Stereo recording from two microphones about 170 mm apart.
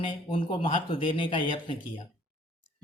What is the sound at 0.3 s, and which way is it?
A man's voice, 30° left (ahead or behind).